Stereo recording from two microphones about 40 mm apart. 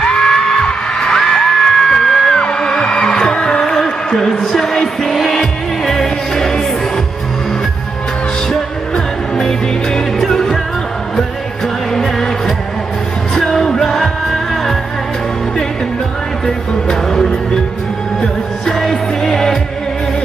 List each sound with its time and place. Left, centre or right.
0.0 s music: centre
4.3 s music: centre
8.5 s music: centre
11.9 s music: centre
13.3 s music: centre
16.4 s music: centre
18.7 s music: centre